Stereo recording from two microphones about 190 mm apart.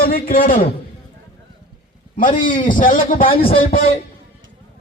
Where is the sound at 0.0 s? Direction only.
50° left (ahead or behind).